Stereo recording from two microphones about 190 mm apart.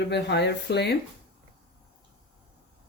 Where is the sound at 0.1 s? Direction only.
65° left (ahead or behind).